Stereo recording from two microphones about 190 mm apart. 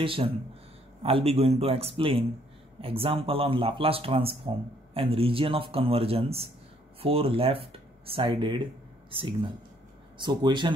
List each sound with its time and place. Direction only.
0.0 s a man's voice: 30° right (ahead or behind)
10.2 s speech: 25° right (ahead or behind)